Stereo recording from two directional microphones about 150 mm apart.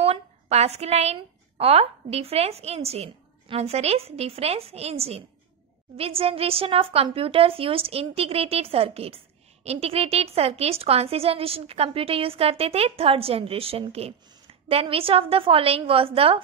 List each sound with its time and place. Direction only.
0.0 s a woman's voice: 45° right (ahead or behind)